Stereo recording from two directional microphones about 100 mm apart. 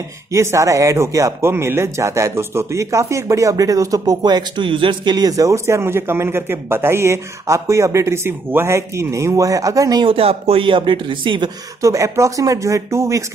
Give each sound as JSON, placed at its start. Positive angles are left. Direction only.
{"t": 0.3, "sound": "speech", "side_deg": -30}
{"t": 10.0, "sound": "speech", "side_deg": -70}
{"t": 11.8, "sound": "speech", "side_deg": -30}